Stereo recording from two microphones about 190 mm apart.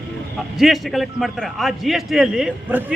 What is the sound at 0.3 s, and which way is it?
A man's voice, centre (ahead or behind).